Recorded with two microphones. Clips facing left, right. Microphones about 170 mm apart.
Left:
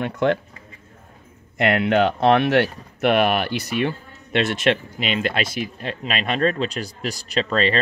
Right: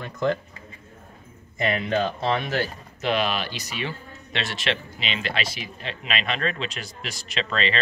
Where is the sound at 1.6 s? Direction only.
70° left (ahead or behind).